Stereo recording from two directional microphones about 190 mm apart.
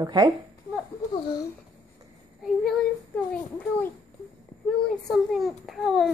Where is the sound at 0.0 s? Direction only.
20° right (ahead or behind).